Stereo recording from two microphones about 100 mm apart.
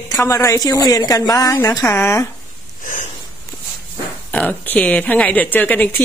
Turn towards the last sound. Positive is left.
turn(degrees=15)  # may be behind; listen again after turning